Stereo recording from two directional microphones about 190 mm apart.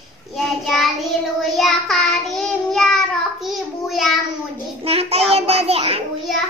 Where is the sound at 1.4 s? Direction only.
Centre (ahead or behind).